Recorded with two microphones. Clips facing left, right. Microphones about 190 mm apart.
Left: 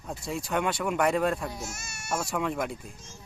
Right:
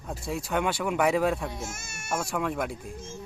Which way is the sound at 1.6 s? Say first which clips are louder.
Right 1 dB; 50° right (ahead or behind).